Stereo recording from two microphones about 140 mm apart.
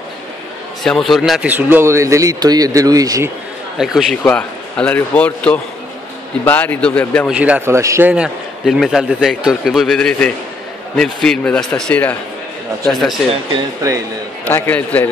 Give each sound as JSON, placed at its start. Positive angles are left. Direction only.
{"t": 0.8, "sound": "a man's voice", "side_deg": 0}
{"t": 1.5, "sound": "speech", "side_deg": -15}
{"t": 3.7, "sound": "speech", "side_deg": 0}
{"t": 7.2, "sound": "speech", "side_deg": -10}
{"t": 7.7, "sound": "speech", "side_deg": -20}
{"t": 8.1, "sound": "a man's voice", "side_deg": -5}
{"t": 12.8, "sound": "a man's voice", "side_deg": 0}
{"t": 13.8, "sound": "speech", "side_deg": -25}
{"t": 14.5, "sound": "speech", "side_deg": 10}